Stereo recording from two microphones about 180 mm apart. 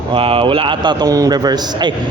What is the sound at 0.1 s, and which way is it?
A man's voice, 30° right (ahead or behind).